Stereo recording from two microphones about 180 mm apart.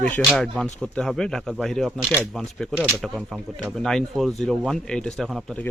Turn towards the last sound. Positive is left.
turn(degrees=5)  # may be behind; listen again after turning